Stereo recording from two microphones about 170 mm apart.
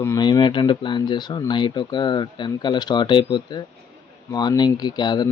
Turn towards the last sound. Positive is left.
turn(degrees=25)  # may be behind; listen again after turning